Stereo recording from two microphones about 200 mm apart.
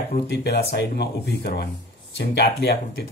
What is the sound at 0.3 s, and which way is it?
Speech, 55° left (ahead or behind).